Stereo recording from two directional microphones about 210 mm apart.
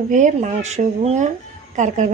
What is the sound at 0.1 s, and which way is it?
Speech, 35° right (ahead or behind).